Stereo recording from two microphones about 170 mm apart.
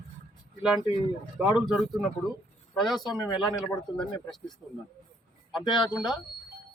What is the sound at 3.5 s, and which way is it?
Speech, 20° left (ahead or behind).